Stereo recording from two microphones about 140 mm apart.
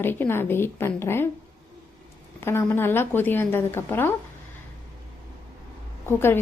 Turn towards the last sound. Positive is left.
turn(degrees=15)  # may be behind; listen again after turning